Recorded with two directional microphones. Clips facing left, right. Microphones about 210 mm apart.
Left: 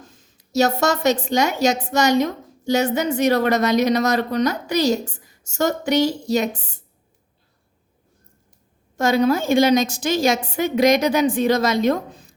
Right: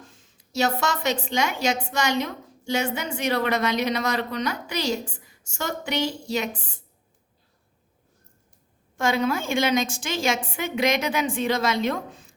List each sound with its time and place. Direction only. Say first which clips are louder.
0.0 s a woman's voice: left 3 dB; 40° left (ahead or behind)
9.0 s a woman's voice: left 6 dB; 40° left (ahead or behind)